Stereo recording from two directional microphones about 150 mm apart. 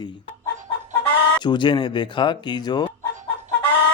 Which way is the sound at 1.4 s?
30° left (ahead or behind).